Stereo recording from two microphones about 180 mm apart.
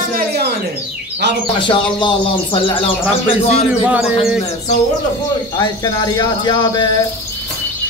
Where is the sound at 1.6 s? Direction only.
25° left (ahead or behind).